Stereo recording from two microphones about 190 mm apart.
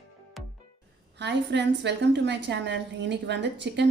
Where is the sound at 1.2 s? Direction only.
65° right (ahead or behind).